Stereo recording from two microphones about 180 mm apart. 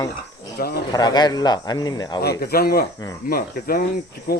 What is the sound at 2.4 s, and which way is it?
Speech, 60° left (ahead or behind).